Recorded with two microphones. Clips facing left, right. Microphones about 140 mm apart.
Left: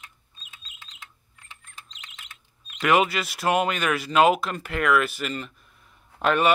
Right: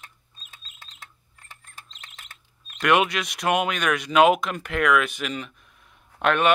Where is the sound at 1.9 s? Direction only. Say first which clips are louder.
Even; 45° right (ahead or behind).